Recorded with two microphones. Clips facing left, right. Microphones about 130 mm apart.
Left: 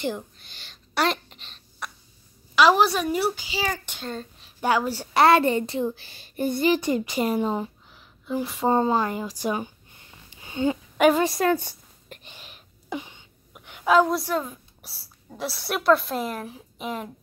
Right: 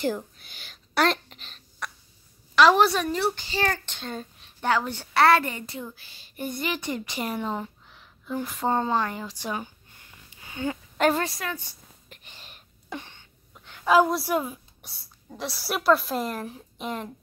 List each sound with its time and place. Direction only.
0.0 s a sound: centre (ahead or behind)
2.5 s a woman's voice: 5° left (ahead or behind)
4.1 s a woman's voice: 5° right (ahead or behind)
4.6 s a woman's voice: 10° left (ahead or behind)
6.0 s speech: 50° left (ahead or behind)
6.4 s speech: 30° left (ahead or behind); by 7.7 s 15° left (ahead or behind)
7.9 s speech: centre (ahead or behind)
10.4 s a sound: 25° left (ahead or behind)
11.0 s speech: 5° left (ahead or behind)
11.3 s a sound: 45° left (ahead or behind)
12.4 s a sound: 10° left (ahead or behind)
13.8 s a woman's voice: 5° right (ahead or behind)
14.8 s a woman's voice: 5° left (ahead or behind)